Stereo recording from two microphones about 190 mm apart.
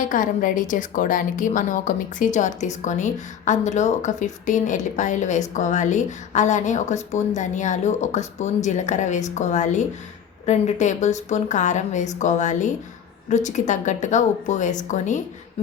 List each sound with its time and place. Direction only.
0.1 s a woman's voice: 45° left (ahead or behind)